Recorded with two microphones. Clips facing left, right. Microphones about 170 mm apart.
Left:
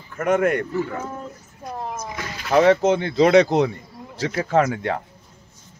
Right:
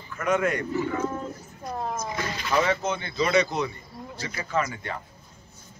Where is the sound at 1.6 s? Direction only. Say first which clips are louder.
Left 1 dB; 5° left (ahead or behind).